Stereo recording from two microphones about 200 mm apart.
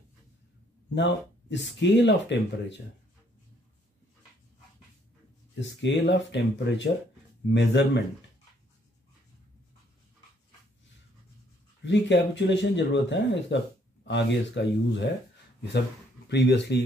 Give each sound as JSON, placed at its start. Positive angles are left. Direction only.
{"t": 0.9, "sound": "speech", "side_deg": 60}
{"t": 5.6, "sound": "speech", "side_deg": 60}
{"t": 11.8, "sound": "speech", "side_deg": 65}
{"t": 16.3, "sound": "speech", "side_deg": 60}